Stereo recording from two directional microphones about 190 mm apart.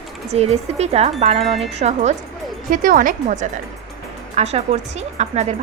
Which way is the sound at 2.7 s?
45° right (ahead or behind).